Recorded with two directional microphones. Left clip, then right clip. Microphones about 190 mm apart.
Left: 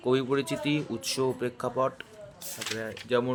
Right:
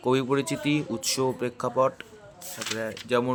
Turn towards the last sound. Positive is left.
turn(degrees=-15)  # may be behind; listen again after turning